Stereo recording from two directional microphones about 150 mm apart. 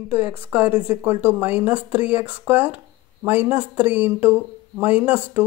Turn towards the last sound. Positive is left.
turn(degrees=-10)  # may be behind; listen again after turning